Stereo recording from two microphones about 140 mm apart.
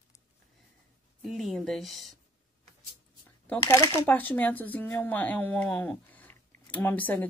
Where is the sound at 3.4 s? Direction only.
15° left (ahead or behind).